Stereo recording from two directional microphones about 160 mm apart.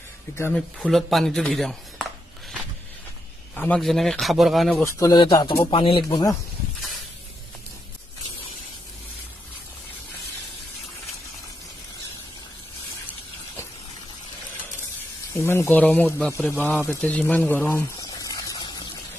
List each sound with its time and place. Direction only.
0.4 s speech: 5° left (ahead or behind)
3.5 s speech: 10° left (ahead or behind)
4.8 s speech: 20° left (ahead or behind)
15.3 s speech: 15° left (ahead or behind)
17.9 s a sound: 25° left (ahead or behind)